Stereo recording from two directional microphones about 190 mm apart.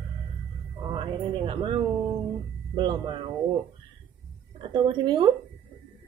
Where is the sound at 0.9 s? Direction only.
25° right (ahead or behind).